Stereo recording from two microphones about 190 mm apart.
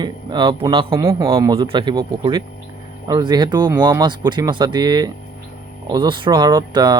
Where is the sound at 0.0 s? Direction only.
25° right (ahead or behind).